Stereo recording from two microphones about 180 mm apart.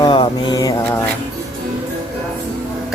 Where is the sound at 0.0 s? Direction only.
25° left (ahead or behind).